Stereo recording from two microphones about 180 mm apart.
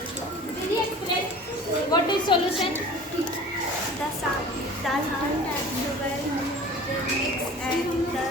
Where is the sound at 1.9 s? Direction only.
25° left (ahead or behind).